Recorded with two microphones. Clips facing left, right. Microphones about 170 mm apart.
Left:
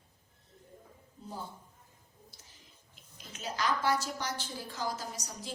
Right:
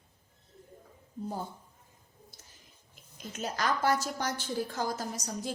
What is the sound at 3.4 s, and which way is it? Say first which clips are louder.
A woman's voice: right 2 dB; 50° right (ahead or behind).